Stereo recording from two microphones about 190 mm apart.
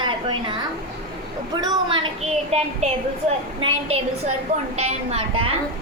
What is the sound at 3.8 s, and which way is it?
A woman's voice, 30° right (ahead or behind).